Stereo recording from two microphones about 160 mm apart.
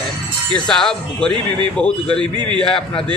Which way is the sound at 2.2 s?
30° right (ahead or behind).